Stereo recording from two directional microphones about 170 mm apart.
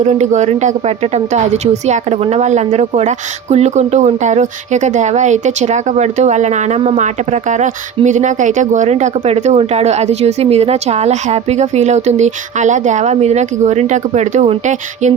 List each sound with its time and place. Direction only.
0.0 s speech: 45° right (ahead or behind)